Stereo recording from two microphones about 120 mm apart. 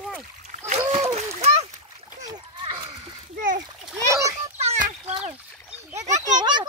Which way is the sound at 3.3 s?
90° right.